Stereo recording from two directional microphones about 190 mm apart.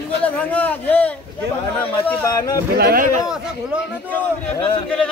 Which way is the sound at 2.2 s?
20° left (ahead or behind).